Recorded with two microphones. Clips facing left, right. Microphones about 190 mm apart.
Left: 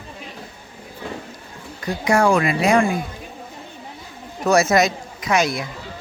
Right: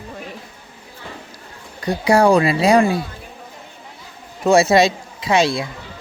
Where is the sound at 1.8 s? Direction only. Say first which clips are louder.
Right 3 dB; 35° right (ahead or behind).